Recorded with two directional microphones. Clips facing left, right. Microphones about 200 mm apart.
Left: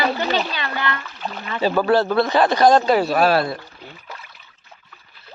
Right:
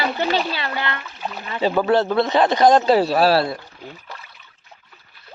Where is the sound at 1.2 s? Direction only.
10° right (ahead or behind); by 3.6 s 30° right (ahead or behind).